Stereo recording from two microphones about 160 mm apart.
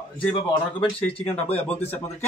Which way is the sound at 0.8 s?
30° left (ahead or behind).